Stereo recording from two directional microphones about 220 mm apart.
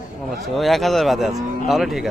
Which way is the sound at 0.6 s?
Centre (ahead or behind).